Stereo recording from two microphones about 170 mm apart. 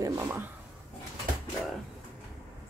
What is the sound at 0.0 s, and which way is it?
Speech, 15° right (ahead or behind).